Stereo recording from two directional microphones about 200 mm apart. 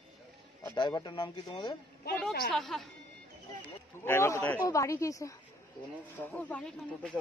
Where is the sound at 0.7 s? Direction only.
20° left (ahead or behind).